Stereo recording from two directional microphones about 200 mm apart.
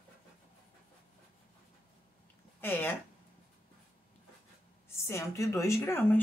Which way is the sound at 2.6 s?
10° left (ahead or behind).